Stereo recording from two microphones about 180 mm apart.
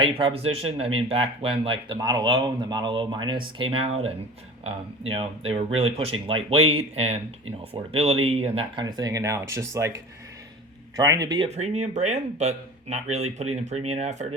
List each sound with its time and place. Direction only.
0.0 s speech: 30° right (ahead or behind)
10.9 s speech: 20° right (ahead or behind)
11.4 s speech: 40° right (ahead or behind)